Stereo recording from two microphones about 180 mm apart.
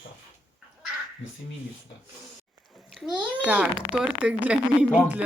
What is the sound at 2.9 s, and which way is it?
A child's voice, 5° right (ahead or behind).